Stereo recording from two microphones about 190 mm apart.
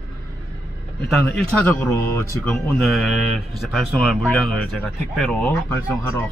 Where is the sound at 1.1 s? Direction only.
Centre (ahead or behind).